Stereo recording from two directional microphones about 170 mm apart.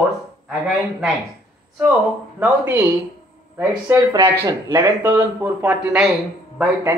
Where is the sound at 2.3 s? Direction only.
10° right (ahead or behind).